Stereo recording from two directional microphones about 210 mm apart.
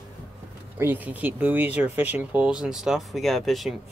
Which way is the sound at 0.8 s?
10° right (ahead or behind).